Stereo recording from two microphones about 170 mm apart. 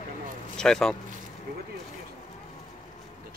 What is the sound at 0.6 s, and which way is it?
Speech, 5° left (ahead or behind).